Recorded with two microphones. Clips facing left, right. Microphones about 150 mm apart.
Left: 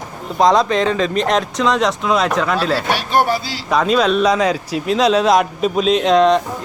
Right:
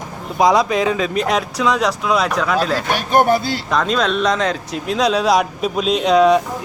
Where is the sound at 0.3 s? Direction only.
10° right (ahead or behind).